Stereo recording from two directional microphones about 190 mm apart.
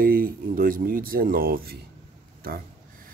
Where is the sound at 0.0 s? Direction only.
50° right (ahead or behind).